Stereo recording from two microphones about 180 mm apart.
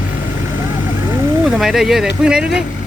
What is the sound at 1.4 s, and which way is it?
Speech, centre (ahead or behind).